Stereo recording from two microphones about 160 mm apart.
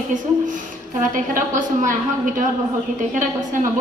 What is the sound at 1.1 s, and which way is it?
A woman's voice, 55° right (ahead or behind).